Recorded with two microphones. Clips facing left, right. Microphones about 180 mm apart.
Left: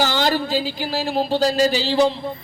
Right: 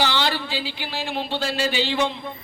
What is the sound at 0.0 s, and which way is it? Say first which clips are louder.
A man's voice: left 4 dB; 45° left (ahead or behind).